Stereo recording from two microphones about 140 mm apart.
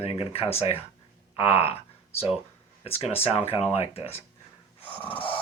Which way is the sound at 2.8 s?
45° left (ahead or behind).